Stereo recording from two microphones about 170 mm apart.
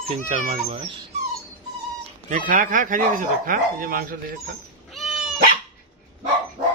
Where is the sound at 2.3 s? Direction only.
50° right (ahead or behind).